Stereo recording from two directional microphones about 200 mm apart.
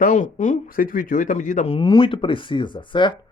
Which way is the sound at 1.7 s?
25° left (ahead or behind).